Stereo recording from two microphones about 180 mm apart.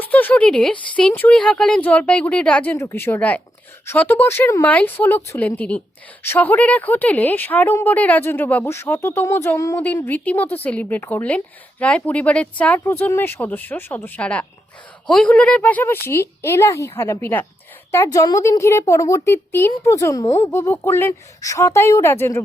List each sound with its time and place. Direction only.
0.0 s speech: 10° left (ahead or behind)